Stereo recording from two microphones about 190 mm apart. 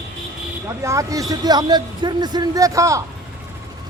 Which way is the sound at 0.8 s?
15° right (ahead or behind).